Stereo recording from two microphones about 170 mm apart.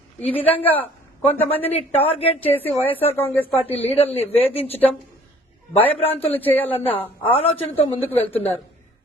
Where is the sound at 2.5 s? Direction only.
10° left (ahead or behind).